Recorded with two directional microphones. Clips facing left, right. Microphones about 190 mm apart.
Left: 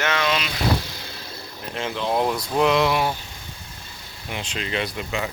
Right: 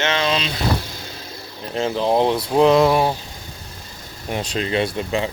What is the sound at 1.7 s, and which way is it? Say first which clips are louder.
Speech: right 6 dB; 35° right (ahead or behind).